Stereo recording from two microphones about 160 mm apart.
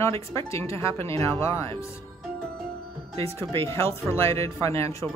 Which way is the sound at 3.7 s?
15° left (ahead or behind).